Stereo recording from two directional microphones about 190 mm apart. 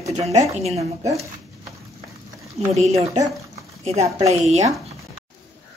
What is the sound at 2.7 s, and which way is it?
A woman's voice, 35° right (ahead or behind).